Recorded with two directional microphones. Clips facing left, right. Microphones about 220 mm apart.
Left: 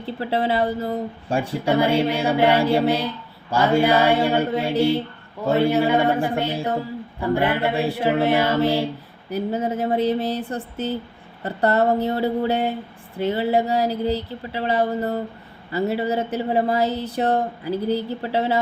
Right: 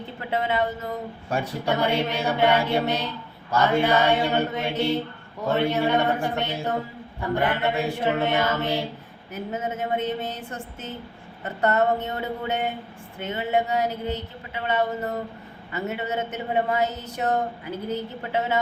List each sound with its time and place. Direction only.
0.0 s speech: 35° left (ahead or behind)
6.2 s music: 10° left (ahead or behind)
7.3 s speech: 30° left (ahead or behind)